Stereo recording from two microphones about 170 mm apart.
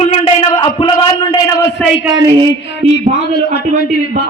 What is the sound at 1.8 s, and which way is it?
Speech, 5° left (ahead or behind).